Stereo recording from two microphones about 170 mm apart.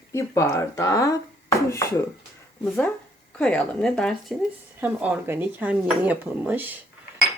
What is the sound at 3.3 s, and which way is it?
Speech, 5° left (ahead or behind).